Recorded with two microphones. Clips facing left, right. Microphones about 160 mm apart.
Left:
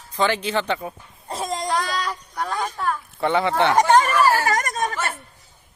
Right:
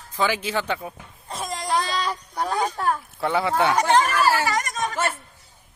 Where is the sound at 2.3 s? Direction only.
35° right (ahead or behind).